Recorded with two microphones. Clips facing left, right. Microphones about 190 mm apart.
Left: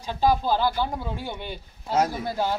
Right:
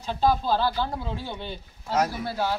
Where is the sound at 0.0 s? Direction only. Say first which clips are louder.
Left 1 dB; 10° left (ahead or behind).